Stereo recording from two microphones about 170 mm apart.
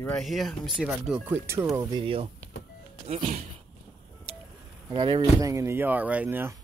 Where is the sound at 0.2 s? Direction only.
Centre (ahead or behind).